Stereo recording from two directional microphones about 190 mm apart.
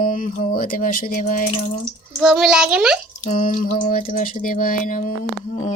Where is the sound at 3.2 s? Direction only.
45° left (ahead or behind).